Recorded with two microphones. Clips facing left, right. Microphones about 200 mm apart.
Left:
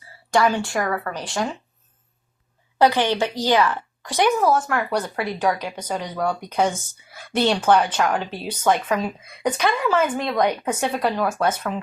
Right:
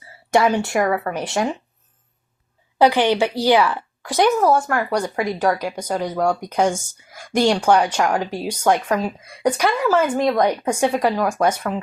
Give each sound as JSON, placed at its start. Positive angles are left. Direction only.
{"t": 0.3, "sound": "speech", "side_deg": -20}
{"t": 2.7, "sound": "speech", "side_deg": -15}